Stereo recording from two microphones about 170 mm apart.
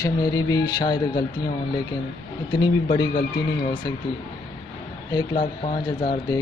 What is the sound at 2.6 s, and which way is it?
Speech, 25° left (ahead or behind).